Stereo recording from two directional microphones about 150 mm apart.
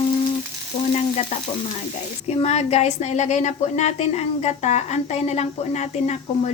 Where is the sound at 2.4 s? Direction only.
45° left (ahead or behind).